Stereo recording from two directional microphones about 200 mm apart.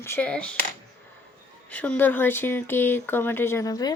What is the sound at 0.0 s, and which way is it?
Speech, 10° left (ahead or behind).